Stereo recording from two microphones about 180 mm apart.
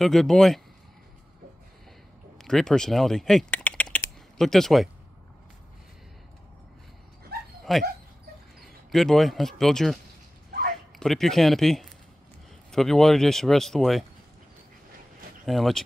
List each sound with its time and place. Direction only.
0.0 s speech: centre (ahead or behind)
2.3 s speech: centre (ahead or behind)
7.3 s dog: 60° right (ahead or behind)
7.7 s speech: centre (ahead or behind)
8.9 s speech: centre (ahead or behind)
11.0 s speech: centre (ahead or behind)
15.4 s speech: centre (ahead or behind)